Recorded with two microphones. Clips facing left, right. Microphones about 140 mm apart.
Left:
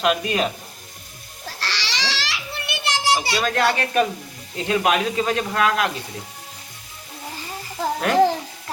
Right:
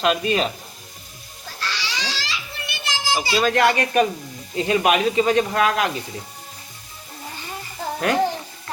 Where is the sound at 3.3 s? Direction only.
5° right (ahead or behind).